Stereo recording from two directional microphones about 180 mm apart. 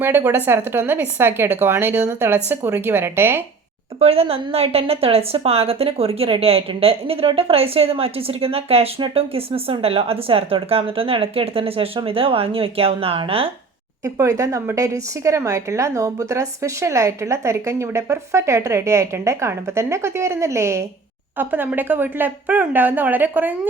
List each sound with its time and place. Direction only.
0.0 s a woman's voice: 10° right (ahead or behind)
4.0 s a woman's voice: 35° right (ahead or behind)
14.0 s a woman's voice: 20° right (ahead or behind)